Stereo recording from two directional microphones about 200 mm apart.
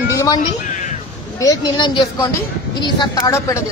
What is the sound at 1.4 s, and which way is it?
A woman's voice, 20° left (ahead or behind).